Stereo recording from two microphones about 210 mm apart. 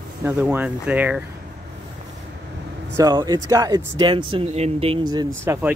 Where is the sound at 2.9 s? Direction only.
20° right (ahead or behind).